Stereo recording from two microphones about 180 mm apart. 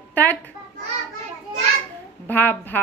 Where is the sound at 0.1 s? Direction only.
10° left (ahead or behind).